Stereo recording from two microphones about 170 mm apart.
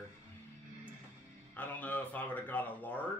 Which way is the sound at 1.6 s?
10° left (ahead or behind).